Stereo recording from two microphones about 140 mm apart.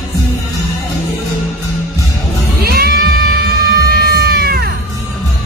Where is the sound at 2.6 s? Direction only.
90° right.